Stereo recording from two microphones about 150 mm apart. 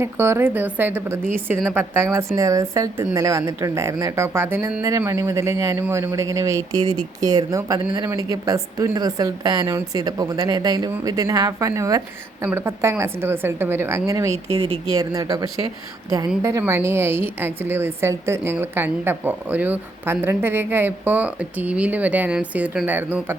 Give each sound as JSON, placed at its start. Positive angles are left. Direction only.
{"t": 0.0, "sound": "a woman's voice", "side_deg": -15}